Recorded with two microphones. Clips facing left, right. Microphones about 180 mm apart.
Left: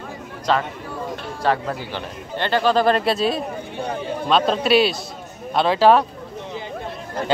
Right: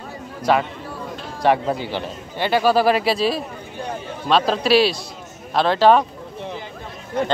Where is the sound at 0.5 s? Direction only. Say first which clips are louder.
Right 2 dB; 10° right (ahead or behind).